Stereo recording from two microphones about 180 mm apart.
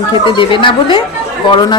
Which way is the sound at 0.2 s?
30° left (ahead or behind).